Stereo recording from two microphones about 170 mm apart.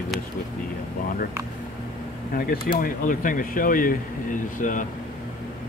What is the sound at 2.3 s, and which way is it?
Speech, 60° left (ahead or behind).